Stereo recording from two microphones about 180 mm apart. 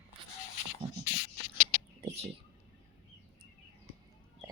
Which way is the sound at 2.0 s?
35° right (ahead or behind).